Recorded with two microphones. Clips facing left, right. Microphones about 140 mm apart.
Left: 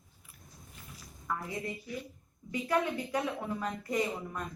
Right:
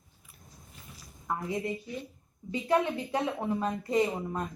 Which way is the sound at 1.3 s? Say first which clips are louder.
Right 4 dB; 20° right (ahead or behind).